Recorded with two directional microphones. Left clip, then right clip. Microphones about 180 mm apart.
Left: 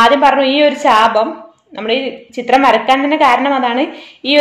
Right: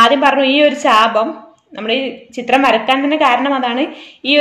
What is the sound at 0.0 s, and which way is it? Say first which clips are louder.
A woman's voice: left 1 dB; 10° right (ahead or behind).